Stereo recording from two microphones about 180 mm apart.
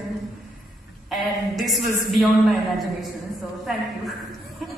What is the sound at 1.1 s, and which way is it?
Speech, centre (ahead or behind).